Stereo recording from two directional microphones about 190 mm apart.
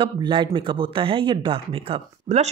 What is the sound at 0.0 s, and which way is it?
Speech, 25° right (ahead or behind).